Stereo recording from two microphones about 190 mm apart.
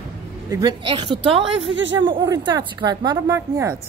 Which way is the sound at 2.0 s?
25° right (ahead or behind).